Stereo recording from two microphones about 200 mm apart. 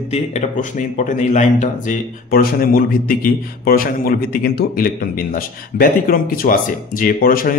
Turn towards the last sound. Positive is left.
turn(degrees=45)  # may be behind; listen again after turning